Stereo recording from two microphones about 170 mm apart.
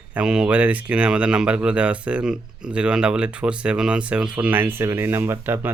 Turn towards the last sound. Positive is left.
turn(degrees=-15)  # may be behind; listen again after turning